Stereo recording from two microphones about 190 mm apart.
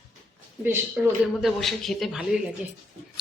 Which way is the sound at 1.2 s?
Centre (ahead or behind).